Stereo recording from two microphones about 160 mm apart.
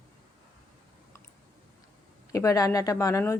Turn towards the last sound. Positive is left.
turn(degrees=20)  # may be behind; listen again after turning